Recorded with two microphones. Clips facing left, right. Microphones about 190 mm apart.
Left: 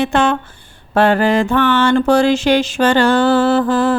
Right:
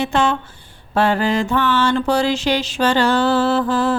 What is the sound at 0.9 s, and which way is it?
Music, 55° left (ahead or behind).